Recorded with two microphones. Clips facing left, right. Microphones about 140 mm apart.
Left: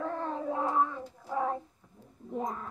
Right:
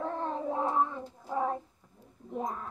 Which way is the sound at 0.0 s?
20° right (ahead or behind).